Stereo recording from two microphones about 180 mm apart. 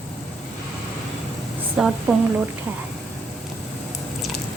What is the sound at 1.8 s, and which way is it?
Speech, 5° right (ahead or behind).